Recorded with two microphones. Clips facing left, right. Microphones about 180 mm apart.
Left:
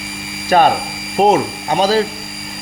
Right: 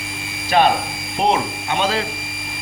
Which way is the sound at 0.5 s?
45° left (ahead or behind).